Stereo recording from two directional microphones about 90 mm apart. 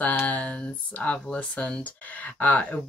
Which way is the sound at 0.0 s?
20° left (ahead or behind).